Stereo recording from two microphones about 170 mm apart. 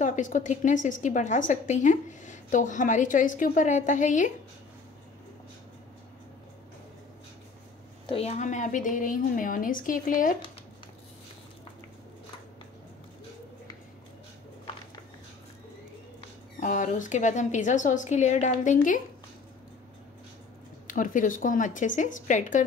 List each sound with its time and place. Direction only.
0.0 s a woman's voice: 50° left (ahead or behind)
8.1 s a woman's voice: 40° left (ahead or behind)
16.5 s a woman's voice: 50° left (ahead or behind)
20.8 s a woman's voice: 50° left (ahead or behind)